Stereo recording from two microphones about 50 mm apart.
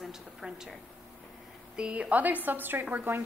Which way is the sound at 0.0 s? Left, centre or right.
Centre.